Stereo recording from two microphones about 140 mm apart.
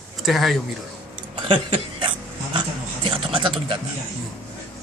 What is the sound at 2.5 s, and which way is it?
Speech, 35° right (ahead or behind).